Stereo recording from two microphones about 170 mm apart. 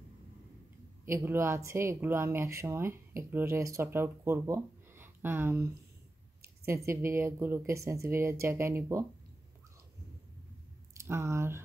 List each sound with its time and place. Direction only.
1.0 s speech: 15° right (ahead or behind)
11.0 s speech: 15° right (ahead or behind)